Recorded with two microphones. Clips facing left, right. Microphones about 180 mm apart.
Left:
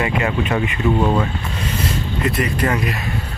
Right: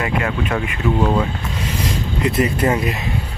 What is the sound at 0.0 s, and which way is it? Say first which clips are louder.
Speech: left 1 dB; 5° left (ahead or behind).